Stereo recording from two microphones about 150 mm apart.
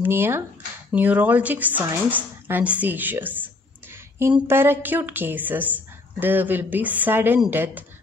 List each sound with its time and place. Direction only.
0.0 s speech: 15° right (ahead or behind)